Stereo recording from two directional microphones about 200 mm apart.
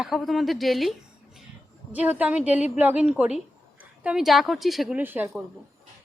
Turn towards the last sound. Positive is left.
turn(degrees=-10)  # may be behind; listen again after turning